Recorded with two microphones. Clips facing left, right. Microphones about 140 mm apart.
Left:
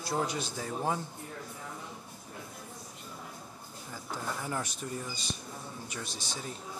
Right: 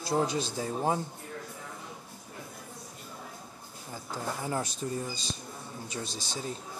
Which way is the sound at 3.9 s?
30° right (ahead or behind).